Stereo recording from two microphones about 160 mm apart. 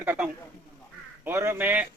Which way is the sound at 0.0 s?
10° right (ahead or behind).